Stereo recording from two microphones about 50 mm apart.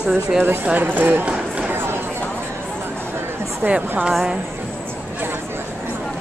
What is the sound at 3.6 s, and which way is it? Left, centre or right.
Speech, right.